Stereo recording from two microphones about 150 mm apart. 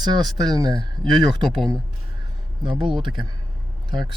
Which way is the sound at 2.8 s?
35° right (ahead or behind).